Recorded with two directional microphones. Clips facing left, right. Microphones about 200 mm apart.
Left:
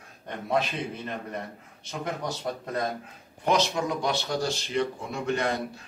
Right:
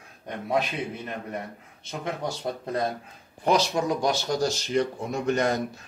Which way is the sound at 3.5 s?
40° right (ahead or behind).